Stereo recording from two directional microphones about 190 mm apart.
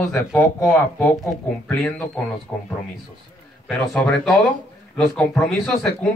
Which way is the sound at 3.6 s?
5° left (ahead or behind).